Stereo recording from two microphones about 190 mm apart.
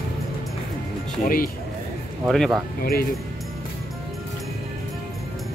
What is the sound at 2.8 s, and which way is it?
Speech, 55° left (ahead or behind).